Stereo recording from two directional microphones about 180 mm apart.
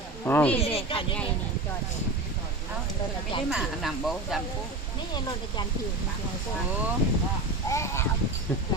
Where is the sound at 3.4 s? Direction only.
Centre (ahead or behind).